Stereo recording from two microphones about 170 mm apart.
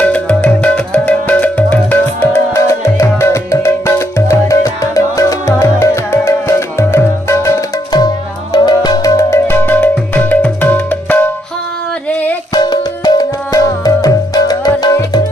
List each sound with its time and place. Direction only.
0.0 s music: 5° left (ahead or behind)
12.5 s music: 20° left (ahead or behind)